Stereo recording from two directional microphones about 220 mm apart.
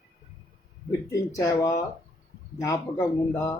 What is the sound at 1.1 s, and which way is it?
Speech, 15° left (ahead or behind).